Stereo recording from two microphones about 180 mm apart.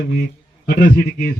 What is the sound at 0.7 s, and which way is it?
Speech, 45° left (ahead or behind).